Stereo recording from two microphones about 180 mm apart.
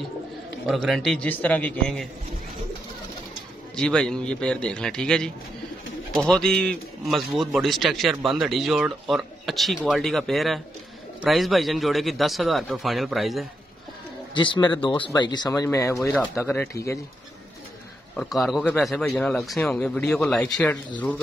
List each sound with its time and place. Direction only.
0.7 s a man's voice: centre (ahead or behind)
3.7 s a man's voice: 5° left (ahead or behind)
14.3 s speech: 25° left (ahead or behind)
18.1 s a man's voice: centre (ahead or behind)